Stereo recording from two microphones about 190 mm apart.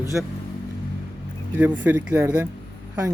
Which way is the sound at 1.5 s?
10° right (ahead or behind).